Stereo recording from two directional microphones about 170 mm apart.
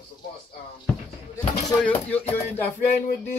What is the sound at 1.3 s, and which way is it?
Speech, 10° left (ahead or behind).